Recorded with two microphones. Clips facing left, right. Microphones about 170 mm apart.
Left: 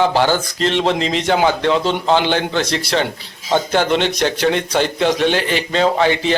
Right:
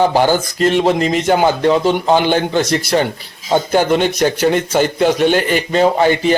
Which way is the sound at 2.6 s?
50° right (ahead or behind).